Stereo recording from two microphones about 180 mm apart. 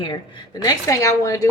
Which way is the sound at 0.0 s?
25° left (ahead or behind).